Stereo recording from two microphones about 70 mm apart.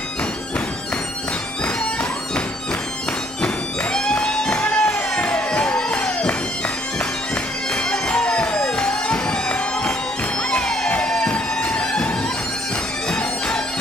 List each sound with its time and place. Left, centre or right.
3.4 s music: centre
7.7 s music: centre